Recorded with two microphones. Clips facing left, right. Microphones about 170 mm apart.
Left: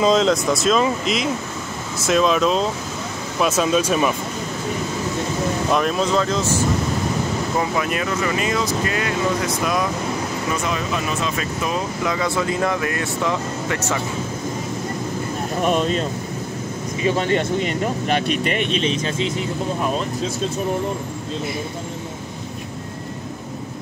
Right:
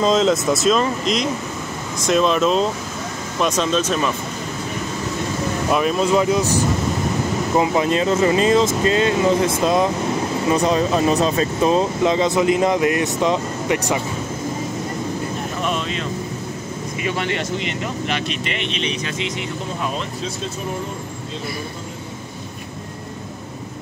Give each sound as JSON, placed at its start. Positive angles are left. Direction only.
{"t": 0.0, "sound": "speech", "side_deg": 0}
{"t": 5.7, "sound": "speech", "side_deg": -5}
{"t": 7.5, "sound": "speech", "side_deg": -25}
{"t": 15.6, "sound": "speech", "side_deg": 45}